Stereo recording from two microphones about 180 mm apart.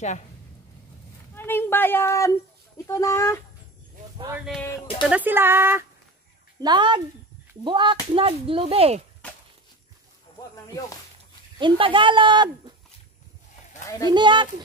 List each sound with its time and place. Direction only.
1.3 s speech: 10° left (ahead or behind)
4.6 s speech: 10° left (ahead or behind)
5.0 s speech: 10° right (ahead or behind)
6.6 s a child's voice: 25° right (ahead or behind)
9.2 s a sound: 5° left (ahead or behind)
11.5 s speech: 25° right (ahead or behind)
13.8 s speech: 20° left (ahead or behind)
14.1 s speech: 25° right (ahead or behind)